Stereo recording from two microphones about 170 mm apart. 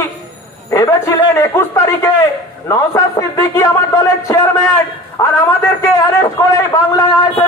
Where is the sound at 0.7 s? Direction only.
15° left (ahead or behind).